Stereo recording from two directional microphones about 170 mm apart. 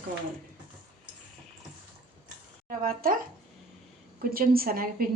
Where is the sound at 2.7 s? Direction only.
55° right (ahead or behind).